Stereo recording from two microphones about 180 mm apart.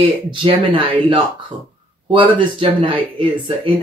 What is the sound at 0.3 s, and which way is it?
Speech, 25° right (ahead or behind).